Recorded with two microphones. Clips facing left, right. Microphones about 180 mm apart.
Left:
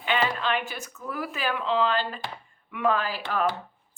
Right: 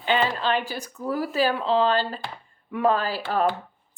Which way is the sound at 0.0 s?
30° right (ahead or behind).